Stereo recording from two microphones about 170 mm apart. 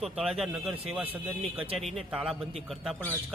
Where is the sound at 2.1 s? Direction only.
5° right (ahead or behind).